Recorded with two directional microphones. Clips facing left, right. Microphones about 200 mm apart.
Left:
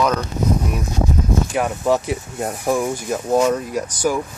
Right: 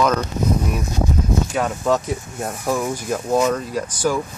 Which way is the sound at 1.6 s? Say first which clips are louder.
Left 2 dB; 15° left (ahead or behind).